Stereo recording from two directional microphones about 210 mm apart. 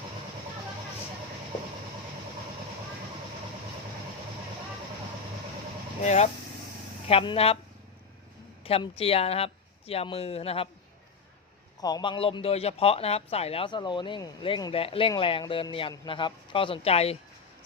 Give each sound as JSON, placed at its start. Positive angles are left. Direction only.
{"t": 6.0, "sound": "a man's voice", "side_deg": 35}
{"t": 8.6, "sound": "a man's voice", "side_deg": 25}
{"t": 11.8, "sound": "a man's voice", "side_deg": 20}